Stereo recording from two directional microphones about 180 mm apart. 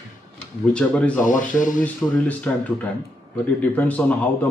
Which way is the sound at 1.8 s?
10° left (ahead or behind).